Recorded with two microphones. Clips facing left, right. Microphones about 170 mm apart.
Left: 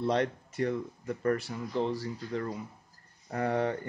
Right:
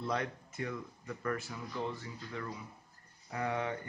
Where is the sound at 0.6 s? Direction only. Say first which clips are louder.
Left 9 dB; 35° left (ahead or behind).